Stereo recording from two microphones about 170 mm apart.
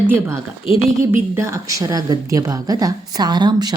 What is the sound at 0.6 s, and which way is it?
Speech, 30° left (ahead or behind).